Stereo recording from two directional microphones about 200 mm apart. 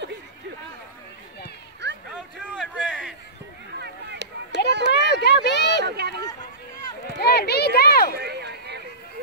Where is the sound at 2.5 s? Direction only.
5° right (ahead or behind).